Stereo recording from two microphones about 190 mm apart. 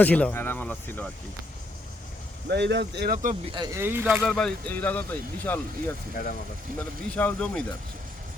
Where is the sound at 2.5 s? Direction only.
65° right (ahead or behind); by 3.4 s 45° right (ahead or behind).